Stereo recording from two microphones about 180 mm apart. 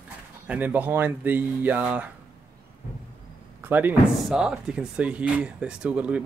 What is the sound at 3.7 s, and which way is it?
Speech, 10° right (ahead or behind).